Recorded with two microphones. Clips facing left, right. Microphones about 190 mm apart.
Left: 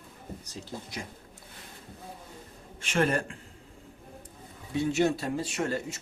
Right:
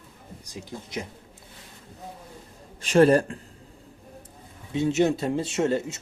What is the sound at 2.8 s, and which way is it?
Speech, 35° right (ahead or behind).